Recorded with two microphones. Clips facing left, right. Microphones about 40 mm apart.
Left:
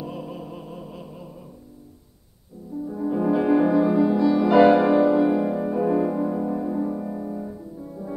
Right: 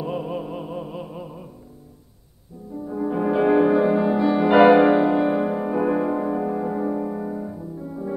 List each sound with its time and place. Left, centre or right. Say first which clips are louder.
0.0 s music: right 6 dB; right
2.9 s music: even; right
7.3 s music: right 2 dB; centre